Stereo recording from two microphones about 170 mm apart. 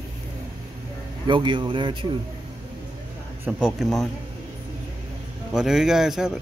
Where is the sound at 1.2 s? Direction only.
30° right (ahead or behind).